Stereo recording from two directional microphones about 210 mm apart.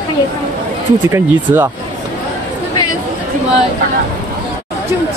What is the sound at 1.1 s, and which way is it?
Speech, 10° right (ahead or behind).